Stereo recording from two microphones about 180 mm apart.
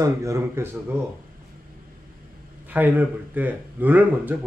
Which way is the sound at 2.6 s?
10° right (ahead or behind).